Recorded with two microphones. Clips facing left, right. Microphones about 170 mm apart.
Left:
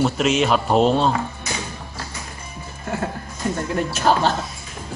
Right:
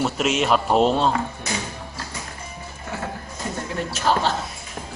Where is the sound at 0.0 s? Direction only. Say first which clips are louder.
Left 3 dB; centre (ahead or behind).